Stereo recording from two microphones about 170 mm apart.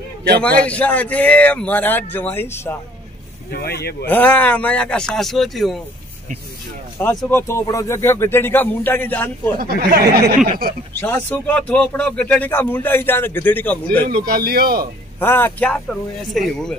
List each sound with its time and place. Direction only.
0.4 s speech: 10° left (ahead or behind)
3.5 s speech: 70° left (ahead or behind)
4.1 s speech: 10° left (ahead or behind)
7.2 s speech: 15° left (ahead or behind)
9.6 s speech: 65° right (ahead or behind)
11.0 s speech: 10° left (ahead or behind)
14.0 s speech: 65° right (ahead or behind)
15.1 s speech: 10° left (ahead or behind)